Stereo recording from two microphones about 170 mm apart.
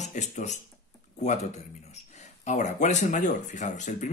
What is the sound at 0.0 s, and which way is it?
Speech, 45° left (ahead or behind).